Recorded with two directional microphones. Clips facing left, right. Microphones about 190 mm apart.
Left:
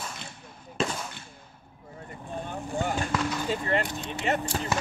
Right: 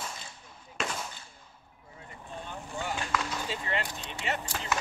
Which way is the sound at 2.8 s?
50° left (ahead or behind).